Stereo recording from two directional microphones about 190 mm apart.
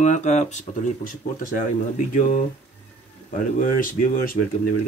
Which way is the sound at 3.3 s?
45° left (ahead or behind).